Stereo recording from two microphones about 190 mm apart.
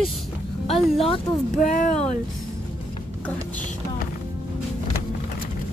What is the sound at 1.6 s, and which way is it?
Speech, 40° left (ahead or behind).